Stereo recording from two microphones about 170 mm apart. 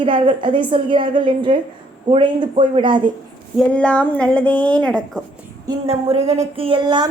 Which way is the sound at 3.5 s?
5° left (ahead or behind).